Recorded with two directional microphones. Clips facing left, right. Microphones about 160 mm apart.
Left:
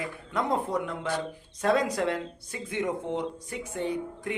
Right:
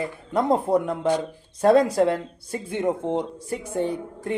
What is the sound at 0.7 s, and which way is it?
Speech, 40° right (ahead or behind).